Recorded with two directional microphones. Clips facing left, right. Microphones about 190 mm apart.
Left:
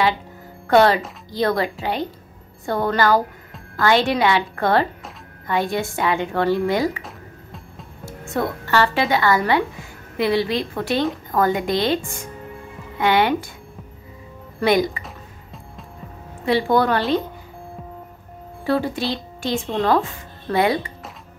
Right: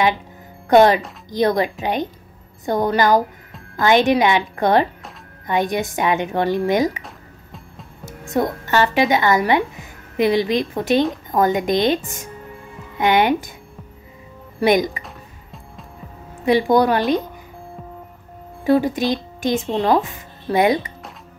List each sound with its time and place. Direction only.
0.7 s a woman's voice: 20° right (ahead or behind)
8.0 s a woman's voice: 15° right (ahead or behind)
14.6 s speech: 15° right (ahead or behind)
15.0 s music: centre (ahead or behind)
16.4 s speech: 15° right (ahead or behind)
18.7 s speech: 15° right (ahead or behind)